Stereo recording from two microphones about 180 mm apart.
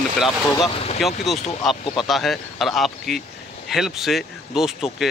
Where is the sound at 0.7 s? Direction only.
35° left (ahead or behind).